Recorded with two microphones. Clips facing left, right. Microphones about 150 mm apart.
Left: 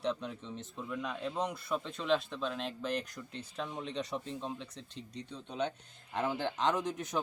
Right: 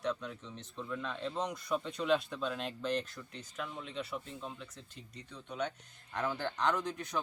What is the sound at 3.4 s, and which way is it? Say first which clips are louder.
Speech: left 3 dB; 30° left (ahead or behind).